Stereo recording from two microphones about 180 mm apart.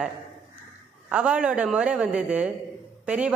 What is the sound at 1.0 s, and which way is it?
A man's voice, 5° right (ahead or behind).